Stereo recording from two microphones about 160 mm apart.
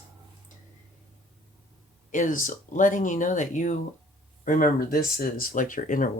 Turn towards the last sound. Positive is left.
turn(degrees=55)  # may be behind; listen again after turning